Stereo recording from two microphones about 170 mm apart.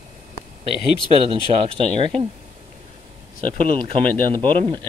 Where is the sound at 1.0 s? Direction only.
30° right (ahead or behind).